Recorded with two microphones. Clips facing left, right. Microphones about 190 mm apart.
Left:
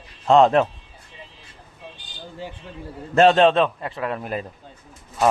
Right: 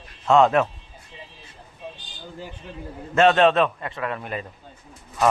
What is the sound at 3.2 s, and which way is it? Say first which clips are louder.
Speech: left 2 dB; 30° left (ahead or behind).